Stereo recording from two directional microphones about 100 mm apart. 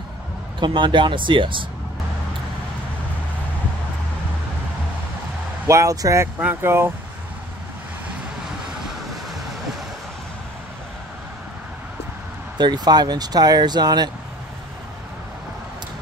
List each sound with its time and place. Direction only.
0.6 s speech: 55° right (ahead or behind)
5.7 s speech: 30° right (ahead or behind)
12.5 s speech: 45° right (ahead or behind)